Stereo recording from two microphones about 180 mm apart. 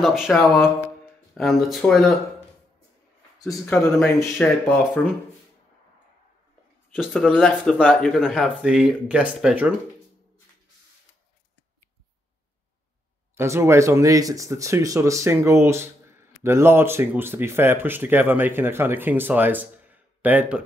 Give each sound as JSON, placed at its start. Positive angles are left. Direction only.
{"t": 0.0, "sound": "speech", "side_deg": 0}
{"t": 3.4, "sound": "speech", "side_deg": 15}
{"t": 7.0, "sound": "speech", "side_deg": 0}
{"t": 13.4, "sound": "speech", "side_deg": -15}